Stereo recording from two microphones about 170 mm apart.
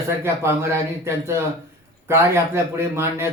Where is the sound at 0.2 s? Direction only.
15° right (ahead or behind).